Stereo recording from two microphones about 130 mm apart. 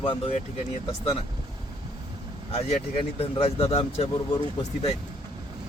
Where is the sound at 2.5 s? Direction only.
55° left (ahead or behind).